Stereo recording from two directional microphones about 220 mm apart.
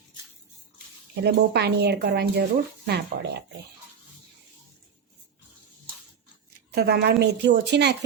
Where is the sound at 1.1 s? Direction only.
50° right (ahead or behind).